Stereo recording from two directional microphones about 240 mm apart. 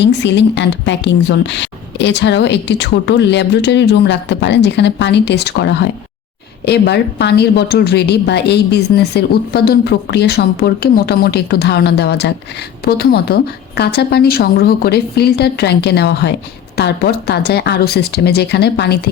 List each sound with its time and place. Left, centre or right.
0.0 s speech: left